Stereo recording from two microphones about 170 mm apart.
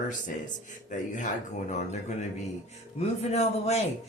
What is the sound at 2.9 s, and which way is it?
Speech, 40° left (ahead or behind).